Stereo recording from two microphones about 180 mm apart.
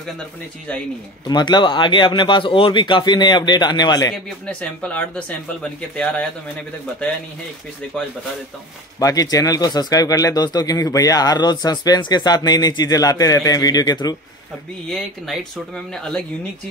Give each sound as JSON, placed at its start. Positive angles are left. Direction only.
{"t": 1.2, "sound": "speech", "side_deg": 25}
{"t": 4.1, "sound": "speech", "side_deg": 5}
{"t": 9.0, "sound": "speech", "side_deg": 20}
{"t": 14.9, "sound": "speech", "side_deg": 0}